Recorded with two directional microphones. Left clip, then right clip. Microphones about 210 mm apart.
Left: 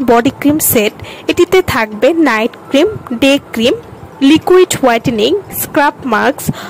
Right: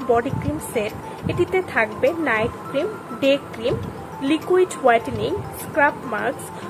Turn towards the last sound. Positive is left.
turn(degrees=55)  # may be behind; listen again after turning